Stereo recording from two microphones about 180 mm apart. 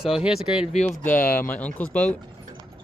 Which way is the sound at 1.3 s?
10° left (ahead or behind).